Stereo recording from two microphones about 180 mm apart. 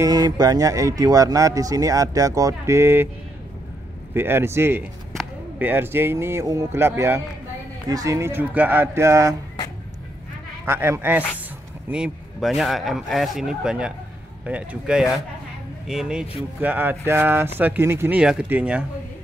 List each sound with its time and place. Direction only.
0.0 s speech: 20° right (ahead or behind)
4.1 s speech: 10° right (ahead or behind)
10.6 s speech: 10° right (ahead or behind)